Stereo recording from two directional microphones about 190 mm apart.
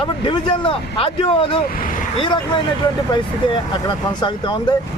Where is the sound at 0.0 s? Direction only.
25° left (ahead or behind).